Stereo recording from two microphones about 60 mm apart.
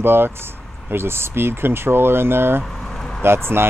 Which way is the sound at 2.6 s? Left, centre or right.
Centre.